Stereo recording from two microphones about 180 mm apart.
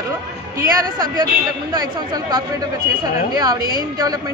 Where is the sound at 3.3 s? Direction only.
20° right (ahead or behind).